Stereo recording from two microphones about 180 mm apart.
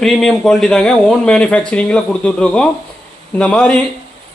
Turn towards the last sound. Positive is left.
turn(degrees=5)  # may be behind; listen again after turning